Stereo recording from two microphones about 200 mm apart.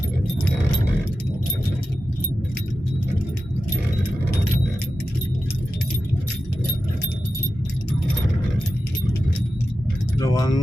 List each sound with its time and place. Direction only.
10.2 s vehicle: 20° left (ahead or behind)